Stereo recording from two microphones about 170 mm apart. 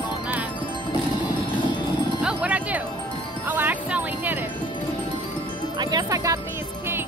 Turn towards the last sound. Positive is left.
turn(degrees=-20)  # may be behind; listen again after turning